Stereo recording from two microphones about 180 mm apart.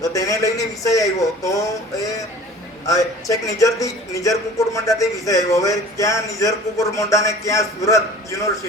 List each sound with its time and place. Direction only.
0.0 s a man's voice: 20° left (ahead or behind)